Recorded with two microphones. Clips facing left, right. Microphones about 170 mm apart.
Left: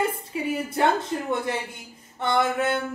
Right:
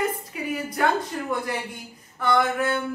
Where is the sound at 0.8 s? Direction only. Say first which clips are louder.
Left 1 dB; 30° left (ahead or behind).